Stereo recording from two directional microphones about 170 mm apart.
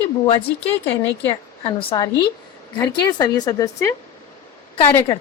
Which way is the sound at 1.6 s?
30° left (ahead or behind).